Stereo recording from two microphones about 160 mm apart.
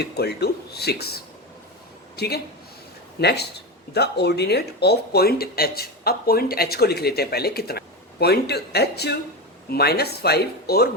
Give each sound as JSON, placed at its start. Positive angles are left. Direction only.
{"t": 0.0, "sound": "speech", "side_deg": 85}